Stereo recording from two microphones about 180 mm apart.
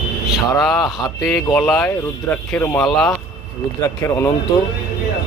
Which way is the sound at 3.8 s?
15° left (ahead or behind).